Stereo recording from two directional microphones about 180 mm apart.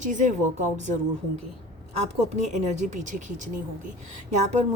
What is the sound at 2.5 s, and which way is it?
A woman's voice, 40° right (ahead or behind).